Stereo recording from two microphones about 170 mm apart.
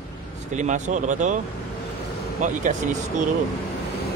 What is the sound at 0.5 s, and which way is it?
Speech, 45° right (ahead or behind).